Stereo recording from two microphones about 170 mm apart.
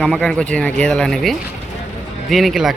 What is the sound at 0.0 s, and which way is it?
Speech, centre (ahead or behind).